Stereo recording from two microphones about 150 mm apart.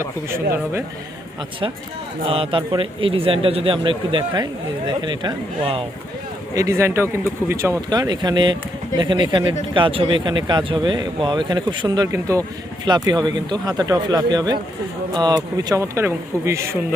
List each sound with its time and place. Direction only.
0.3 s speech: 15° right (ahead or behind)
2.2 s a man's voice: 35° right (ahead or behind)
6.5 s a man's voice: 20° right (ahead or behind)